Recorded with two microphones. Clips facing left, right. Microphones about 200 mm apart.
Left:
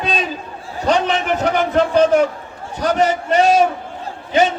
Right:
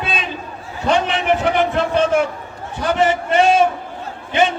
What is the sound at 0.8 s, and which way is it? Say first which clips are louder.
A man's voice: left 1 dB; 40° left (ahead or behind).